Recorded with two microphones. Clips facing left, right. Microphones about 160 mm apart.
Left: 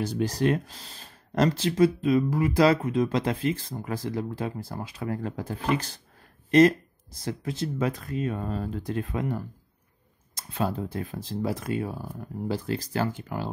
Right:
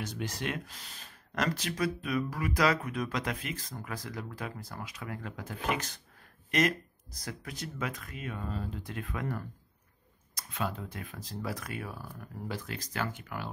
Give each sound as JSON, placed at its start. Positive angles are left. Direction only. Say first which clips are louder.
{"t": 0.0, "sound": "speech", "louder": "left 11 dB", "side_deg": 35}
{"t": 8.5, "sound": "speech", "louder": "left 7 dB", "side_deg": 45}
{"t": 8.9, "sound": "speech", "louder": "left 7 dB", "side_deg": 30}